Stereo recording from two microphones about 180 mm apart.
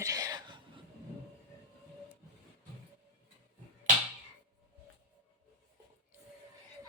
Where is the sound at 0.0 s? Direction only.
20° right (ahead or behind).